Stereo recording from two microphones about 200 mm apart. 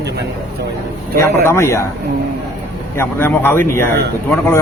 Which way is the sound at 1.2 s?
15° left (ahead or behind).